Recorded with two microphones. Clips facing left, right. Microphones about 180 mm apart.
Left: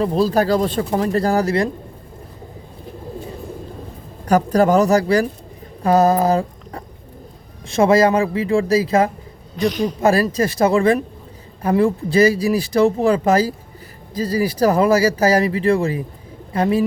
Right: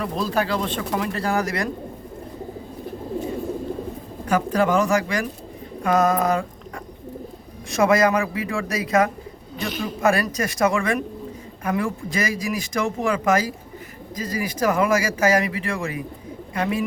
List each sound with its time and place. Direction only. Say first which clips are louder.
0.0 s speech: left 7 dB; 35° left (ahead or behind)
4.3 s speech: left 5 dB; 40° left (ahead or behind)
5.8 s mantra: left 5 dB; 35° left (ahead or behind)
7.7 s a man's voice: left 4 dB; 30° left (ahead or behind)
9.6 s a woman's voice: left 9 dB; centre (ahead or behind)
10.0 s speech: left 4 dB; 30° left (ahead or behind)